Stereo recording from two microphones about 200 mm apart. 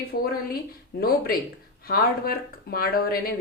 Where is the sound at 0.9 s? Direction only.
50° left (ahead or behind).